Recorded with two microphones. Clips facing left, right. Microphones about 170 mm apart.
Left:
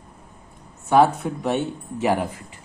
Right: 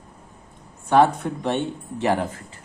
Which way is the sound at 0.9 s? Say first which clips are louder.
Even; 5° left (ahead or behind).